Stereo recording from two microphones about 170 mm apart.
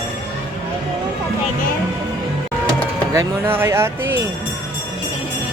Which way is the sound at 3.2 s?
15° right (ahead or behind).